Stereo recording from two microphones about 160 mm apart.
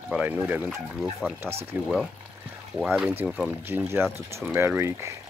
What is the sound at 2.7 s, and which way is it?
Speech, 5° right (ahead or behind).